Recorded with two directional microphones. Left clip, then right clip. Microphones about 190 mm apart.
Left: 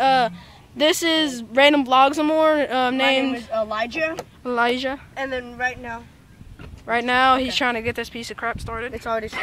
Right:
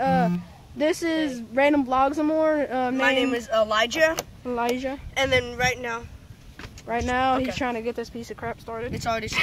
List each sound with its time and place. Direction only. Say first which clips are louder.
0.0 s a sound: left 5 dB; 15° left (ahead or behind)
0.7 s speech: left 5 dB; 10° left (ahead or behind)
3.3 s speech: right 2 dB; 20° right (ahead or behind)
4.4 s speech: left 5 dB; 20° left (ahead or behind)
5.1 s speech: right 5 dB; 35° right (ahead or behind)
6.9 s speech: left 6 dB; 10° left (ahead or behind)